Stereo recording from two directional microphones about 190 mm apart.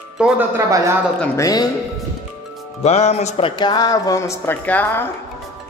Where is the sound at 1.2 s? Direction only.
15° left (ahead or behind).